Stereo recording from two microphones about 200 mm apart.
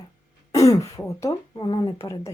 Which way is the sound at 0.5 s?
15° left (ahead or behind).